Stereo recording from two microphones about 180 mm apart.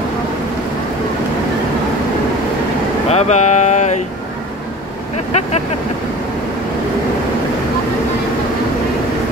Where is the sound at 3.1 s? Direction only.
40° left (ahead or behind).